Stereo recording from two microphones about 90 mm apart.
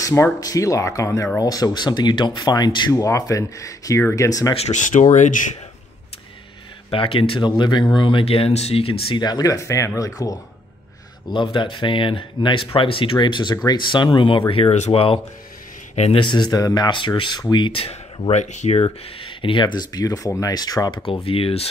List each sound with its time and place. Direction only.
0.0 s speech: 35° left (ahead or behind); by 2.9 s 50° left (ahead or behind)
2.9 s speech: 35° left (ahead or behind)
4.9 s speech: 90° left
6.9 s speech: 85° left; by 7.8 s 60° left (ahead or behind)
8.0 s speech: 70° left (ahead or behind); by 9.2 s 90° left
9.2 s speech: 45° left (ahead or behind)
11.3 s speech: 65° left (ahead or behind)
14.5 s speech: 90° left
16.1 s speech: 65° left (ahead or behind); by 16.9 s 45° left (ahead or behind)
16.9 s speech: 65° left (ahead or behind); by 21.0 s 45° left (ahead or behind)
21.0 s speech: 85° left